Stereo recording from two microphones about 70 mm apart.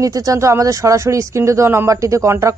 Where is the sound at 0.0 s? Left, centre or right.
Right.